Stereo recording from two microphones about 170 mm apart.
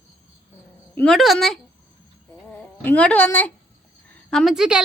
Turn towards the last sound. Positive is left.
turn(degrees=-5)  # may be behind; listen again after turning